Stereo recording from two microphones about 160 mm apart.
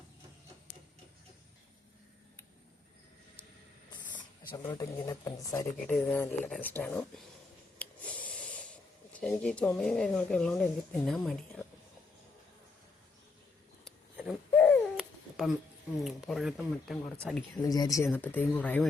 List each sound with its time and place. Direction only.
4.5 s speech: 25° left (ahead or behind)
5.9 s speech: 5° left (ahead or behind)
7.8 s snort: 10° left (ahead or behind)
9.2 s speech: 5° left (ahead or behind)
13.8 s a sound: 5° left (ahead or behind)
14.9 s babbling: centre (ahead or behind)
16.0 s speech: centre (ahead or behind)
17.6 s speech: 20° left (ahead or behind)